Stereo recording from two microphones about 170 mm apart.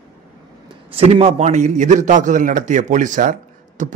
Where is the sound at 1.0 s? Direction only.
35° right (ahead or behind).